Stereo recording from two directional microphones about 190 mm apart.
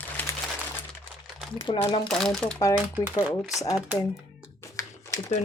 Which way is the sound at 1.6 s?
25° left (ahead or behind).